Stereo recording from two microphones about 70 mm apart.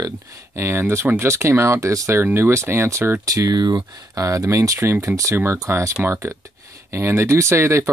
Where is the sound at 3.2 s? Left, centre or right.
Right.